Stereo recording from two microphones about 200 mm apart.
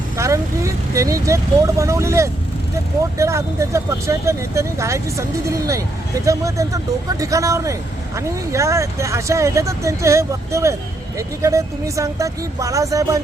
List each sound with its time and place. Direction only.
0.2 s speech: 15° right (ahead or behind)